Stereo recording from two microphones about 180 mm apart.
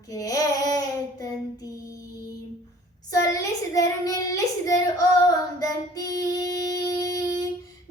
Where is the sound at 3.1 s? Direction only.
15° left (ahead or behind).